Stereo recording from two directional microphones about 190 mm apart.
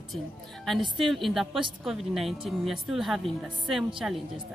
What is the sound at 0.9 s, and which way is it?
Speech, centre (ahead or behind).